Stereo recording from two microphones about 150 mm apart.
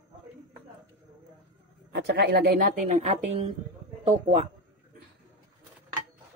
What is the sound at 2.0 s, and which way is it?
Speech, 90° right.